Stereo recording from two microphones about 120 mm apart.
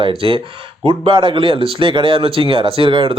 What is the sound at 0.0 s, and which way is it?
Speech, 45° right (ahead or behind).